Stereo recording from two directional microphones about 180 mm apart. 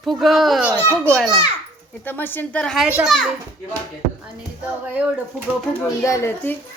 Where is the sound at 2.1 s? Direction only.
10° left (ahead or behind).